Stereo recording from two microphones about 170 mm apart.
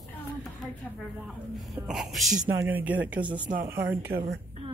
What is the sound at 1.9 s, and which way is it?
Speech, centre (ahead or behind).